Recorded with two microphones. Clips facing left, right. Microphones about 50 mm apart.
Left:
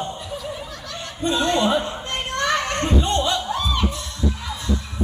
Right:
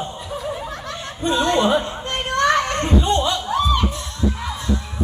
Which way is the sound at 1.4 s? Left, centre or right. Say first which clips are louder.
Right 2 dB; right.